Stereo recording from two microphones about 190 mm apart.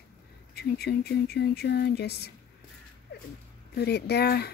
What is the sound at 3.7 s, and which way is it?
Speech, 60° left (ahead or behind).